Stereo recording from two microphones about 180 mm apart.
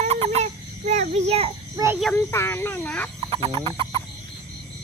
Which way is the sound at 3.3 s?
30° right (ahead or behind).